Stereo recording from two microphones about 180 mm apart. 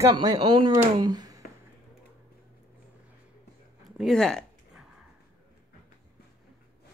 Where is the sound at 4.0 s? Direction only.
Centre (ahead or behind).